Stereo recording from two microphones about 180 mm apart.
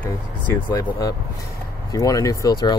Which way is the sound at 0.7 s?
20° left (ahead or behind).